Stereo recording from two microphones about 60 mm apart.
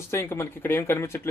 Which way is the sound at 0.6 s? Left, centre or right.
Left.